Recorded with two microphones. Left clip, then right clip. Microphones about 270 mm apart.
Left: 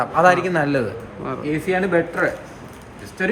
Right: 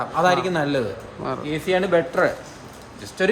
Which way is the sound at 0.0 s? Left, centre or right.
Centre.